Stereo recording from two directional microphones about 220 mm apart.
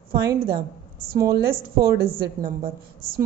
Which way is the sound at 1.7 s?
40° right (ahead or behind).